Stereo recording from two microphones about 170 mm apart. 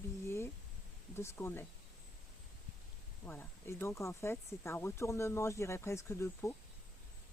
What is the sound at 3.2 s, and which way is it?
Speech, 10° left (ahead or behind).